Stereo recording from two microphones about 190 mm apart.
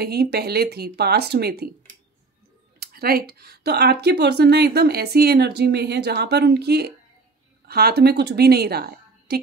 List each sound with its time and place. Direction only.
0.0 s speech: 55° right (ahead or behind)
2.8 s a woman's voice: 50° right (ahead or behind)